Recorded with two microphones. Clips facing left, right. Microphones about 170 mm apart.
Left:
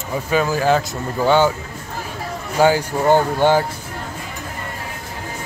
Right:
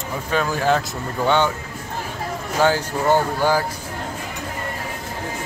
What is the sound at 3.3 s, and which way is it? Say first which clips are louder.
Speech: left 4 dB; 25° left (ahead or behind).